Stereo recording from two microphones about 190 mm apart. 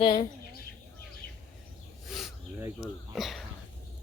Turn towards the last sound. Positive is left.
turn(degrees=0)  # may be behind; listen again after turning